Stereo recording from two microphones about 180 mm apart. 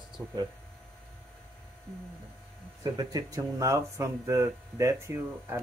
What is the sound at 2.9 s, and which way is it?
Speech, 20° right (ahead or behind).